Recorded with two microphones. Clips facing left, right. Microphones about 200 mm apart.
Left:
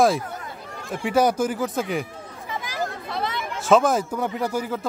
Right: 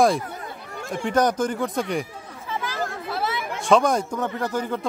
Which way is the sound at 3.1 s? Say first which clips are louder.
Right 1 dB; 5° right (ahead or behind).